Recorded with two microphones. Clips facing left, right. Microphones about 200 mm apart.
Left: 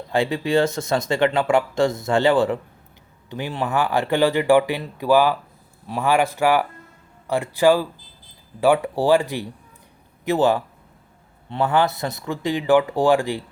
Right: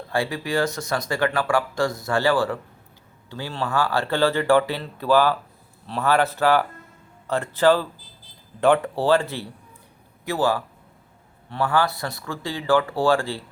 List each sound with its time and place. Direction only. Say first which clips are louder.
0.1 s speech: left 5 dB; 20° left (ahead or behind)